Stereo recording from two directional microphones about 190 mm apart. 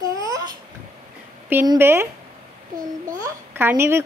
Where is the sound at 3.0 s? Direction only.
15° right (ahead or behind).